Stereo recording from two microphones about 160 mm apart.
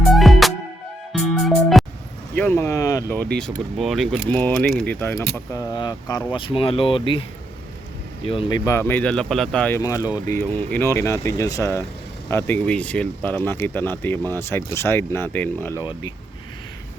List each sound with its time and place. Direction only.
0.0 s music: centre (ahead or behind)
2.3 s speech: 10° left (ahead or behind)
3.3 s speech: 5° left (ahead or behind)
5.5 s speech: 20° left (ahead or behind)